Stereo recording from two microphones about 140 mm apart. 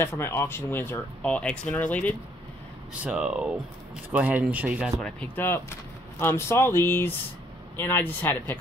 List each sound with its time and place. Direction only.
0.0 s speech: 15° left (ahead or behind)
3.0 s speech: 10° right (ahead or behind)
5.0 s speech: 10° left (ahead or behind)